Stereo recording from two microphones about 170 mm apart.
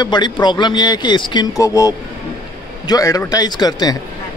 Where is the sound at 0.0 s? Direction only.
25° left (ahead or behind).